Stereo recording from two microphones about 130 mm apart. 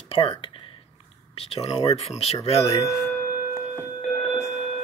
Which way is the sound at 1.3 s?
50° left (ahead or behind).